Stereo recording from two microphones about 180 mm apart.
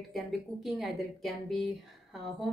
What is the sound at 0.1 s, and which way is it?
A woman's voice, centre (ahead or behind).